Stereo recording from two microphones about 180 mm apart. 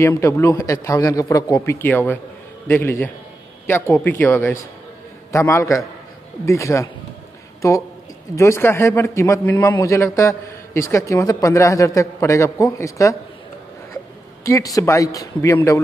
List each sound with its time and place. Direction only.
0.0 s a man's voice: 15° left (ahead or behind)
8.4 s a man's voice: 15° left (ahead or behind)
14.4 s a man's voice: 20° left (ahead or behind)